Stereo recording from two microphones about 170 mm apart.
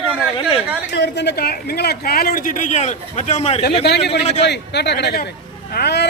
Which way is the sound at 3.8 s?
80° left.